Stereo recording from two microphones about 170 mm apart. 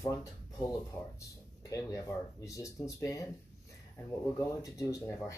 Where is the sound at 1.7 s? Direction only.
20° left (ahead or behind).